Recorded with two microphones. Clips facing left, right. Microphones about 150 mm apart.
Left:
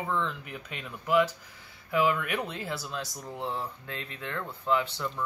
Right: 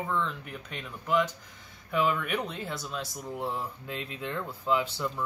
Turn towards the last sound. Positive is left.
turn(degrees=-10)  # may be behind; listen again after turning